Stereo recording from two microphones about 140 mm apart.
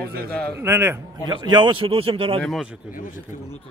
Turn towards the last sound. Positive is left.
turn(degrees=65)  # may be behind; listen again after turning